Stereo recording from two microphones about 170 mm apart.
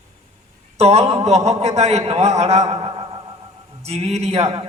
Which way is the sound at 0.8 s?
40° right (ahead or behind).